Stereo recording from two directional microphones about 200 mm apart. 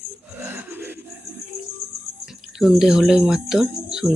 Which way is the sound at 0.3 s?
10° right (ahead or behind).